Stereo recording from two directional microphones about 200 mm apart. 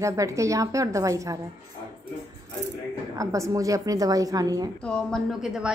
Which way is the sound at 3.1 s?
15° right (ahead or behind).